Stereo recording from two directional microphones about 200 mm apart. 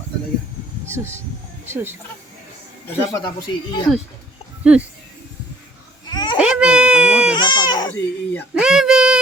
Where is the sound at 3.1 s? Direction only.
15° left (ahead or behind).